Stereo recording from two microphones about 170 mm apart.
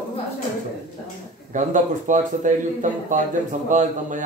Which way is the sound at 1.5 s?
45° right (ahead or behind).